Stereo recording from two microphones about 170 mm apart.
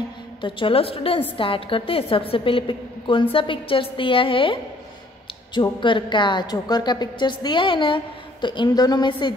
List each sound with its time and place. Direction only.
0.4 s a woman's voice: 30° left (ahead or behind)